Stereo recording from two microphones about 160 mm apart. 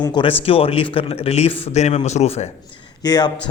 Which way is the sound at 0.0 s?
30° left (ahead or behind).